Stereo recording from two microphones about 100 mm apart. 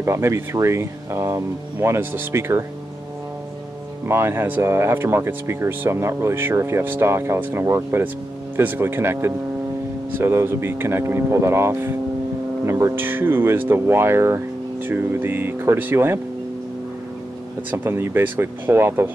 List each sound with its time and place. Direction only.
0.0 s speech: 25° right (ahead or behind)
4.1 s speech: 25° right (ahead or behind)
17.6 s speech: 20° right (ahead or behind)